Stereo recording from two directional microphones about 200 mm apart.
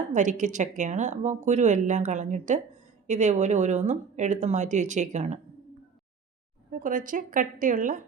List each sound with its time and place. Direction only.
0.1 s a woman's voice: 40° right (ahead or behind)
6.7 s a woman's voice: 40° right (ahead or behind)